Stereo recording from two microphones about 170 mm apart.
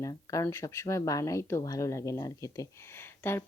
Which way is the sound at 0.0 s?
20° left (ahead or behind).